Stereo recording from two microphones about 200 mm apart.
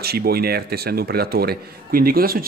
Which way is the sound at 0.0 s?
50° right (ahead or behind).